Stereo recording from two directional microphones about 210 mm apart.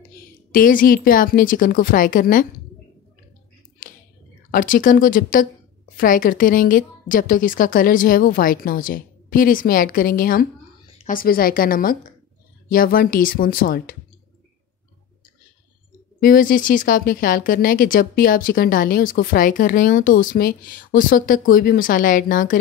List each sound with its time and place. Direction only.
0.5 s speech: 40° left (ahead or behind)
3.8 s a sound: 40° left (ahead or behind)
4.5 s speech: 40° left (ahead or behind)
16.2 s speech: 40° left (ahead or behind)